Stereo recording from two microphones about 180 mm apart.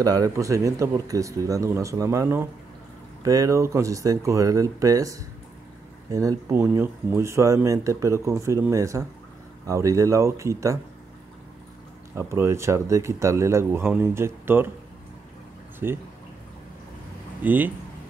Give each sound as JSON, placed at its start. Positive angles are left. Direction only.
{"t": 0.0, "sound": "speech", "side_deg": -20}
{"t": 6.1, "sound": "speech", "side_deg": -15}
{"t": 12.2, "sound": "speech", "side_deg": -15}
{"t": 15.8, "sound": "speech", "side_deg": -10}
{"t": 17.4, "sound": "speech", "side_deg": -10}